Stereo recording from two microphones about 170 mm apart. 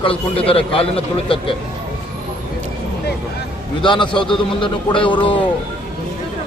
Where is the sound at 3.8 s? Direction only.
30° left (ahead or behind).